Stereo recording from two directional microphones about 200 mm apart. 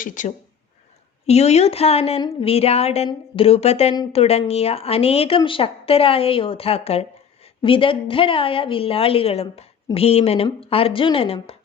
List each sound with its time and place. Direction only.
0.0 s a woman's voice: 40° left (ahead or behind)